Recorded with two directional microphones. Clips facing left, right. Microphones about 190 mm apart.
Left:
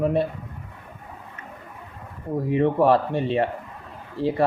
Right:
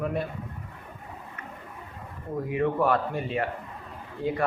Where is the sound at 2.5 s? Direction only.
25° left (ahead or behind).